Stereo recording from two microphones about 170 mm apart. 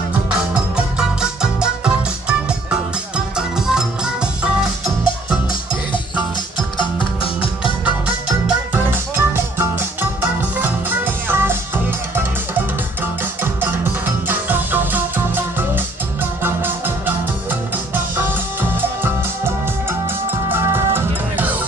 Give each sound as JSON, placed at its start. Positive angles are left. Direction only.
{"t": 0.3, "sound": "music", "side_deg": -5}
{"t": 6.8, "sound": "music", "side_deg": 30}
{"t": 8.5, "sound": "music", "side_deg": -10}